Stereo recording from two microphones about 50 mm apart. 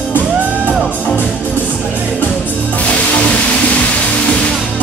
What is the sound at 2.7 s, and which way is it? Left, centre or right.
Music, left.